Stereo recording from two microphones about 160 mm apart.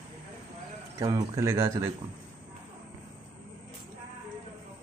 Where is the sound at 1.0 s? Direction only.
25° right (ahead or behind).